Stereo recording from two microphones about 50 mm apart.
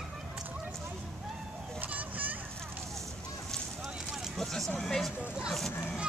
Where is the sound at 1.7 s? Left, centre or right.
Right.